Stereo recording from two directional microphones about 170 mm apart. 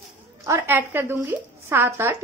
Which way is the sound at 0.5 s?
10° right (ahead or behind).